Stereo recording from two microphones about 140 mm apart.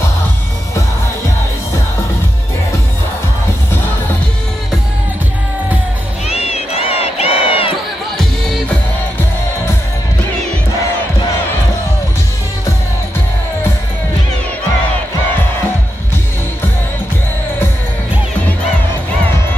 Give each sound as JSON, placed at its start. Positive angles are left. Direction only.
{"t": 6.2, "sound": "crowd", "side_deg": 50}